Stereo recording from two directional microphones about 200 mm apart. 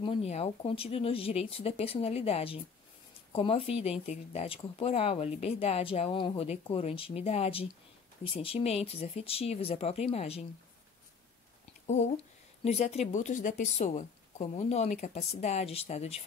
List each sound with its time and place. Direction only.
0.0 s speech: 30° left (ahead or behind)
12.6 s a woman's voice: 35° left (ahead or behind)